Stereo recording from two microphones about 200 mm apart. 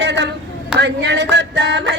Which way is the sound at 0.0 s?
60° right (ahead or behind).